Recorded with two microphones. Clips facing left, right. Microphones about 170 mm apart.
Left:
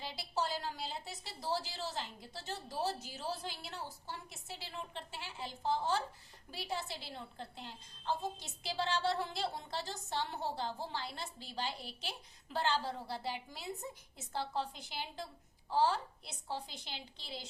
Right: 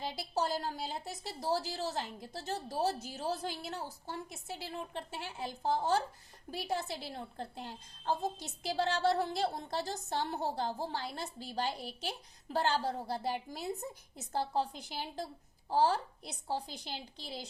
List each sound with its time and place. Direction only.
0.0 s a woman's voice: 45° right (ahead or behind)